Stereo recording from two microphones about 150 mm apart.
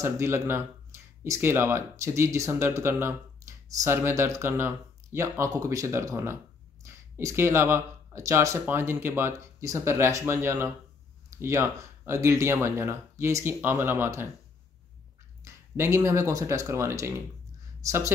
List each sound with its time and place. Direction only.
0.0 s speech: 15° right (ahead or behind)
11.2 s a sound: 20° right (ahead or behind)
12.1 s speech: 20° right (ahead or behind)
15.4 s speech: 15° right (ahead or behind)